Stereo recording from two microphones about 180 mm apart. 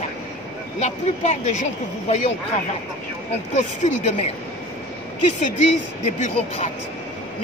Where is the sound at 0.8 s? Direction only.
40° left (ahead or behind).